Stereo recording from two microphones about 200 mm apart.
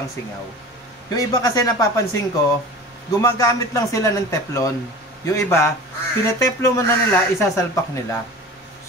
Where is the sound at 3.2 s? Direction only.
15° left (ahead or behind).